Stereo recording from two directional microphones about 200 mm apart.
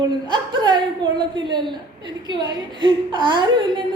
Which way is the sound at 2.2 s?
20° right (ahead or behind).